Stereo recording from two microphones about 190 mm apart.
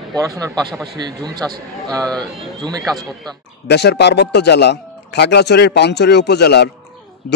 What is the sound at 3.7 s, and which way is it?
Speech, 60° left (ahead or behind).